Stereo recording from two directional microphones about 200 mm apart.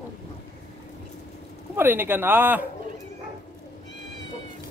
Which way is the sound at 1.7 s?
10° right (ahead or behind).